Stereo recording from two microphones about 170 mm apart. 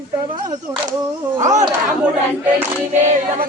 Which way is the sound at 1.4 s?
45° right (ahead or behind).